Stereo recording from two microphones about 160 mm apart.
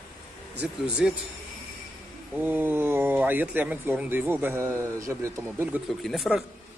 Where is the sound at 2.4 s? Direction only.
10° right (ahead or behind).